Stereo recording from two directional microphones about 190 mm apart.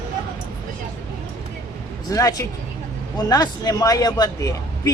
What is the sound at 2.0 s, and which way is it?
A man's voice, 20° left (ahead or behind).